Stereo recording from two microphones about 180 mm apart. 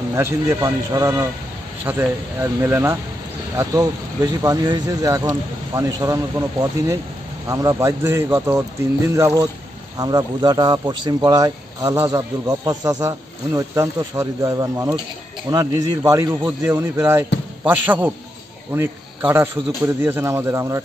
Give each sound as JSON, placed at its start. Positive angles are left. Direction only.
{"t": 0.1, "sound": "a man's voice", "side_deg": -15}